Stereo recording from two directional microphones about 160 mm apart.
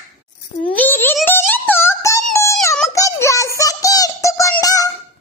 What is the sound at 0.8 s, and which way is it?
Music, 15° left (ahead or behind).